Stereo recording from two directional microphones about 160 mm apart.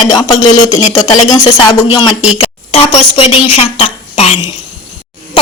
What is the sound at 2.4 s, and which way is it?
A woman's voice, 40° left (ahead or behind).